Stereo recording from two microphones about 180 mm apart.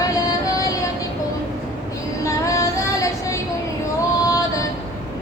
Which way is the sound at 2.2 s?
15° left (ahead or behind).